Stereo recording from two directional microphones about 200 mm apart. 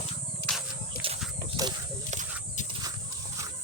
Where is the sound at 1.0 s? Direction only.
25° right (ahead or behind).